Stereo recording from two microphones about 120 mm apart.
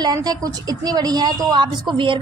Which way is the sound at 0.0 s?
35° right (ahead or behind).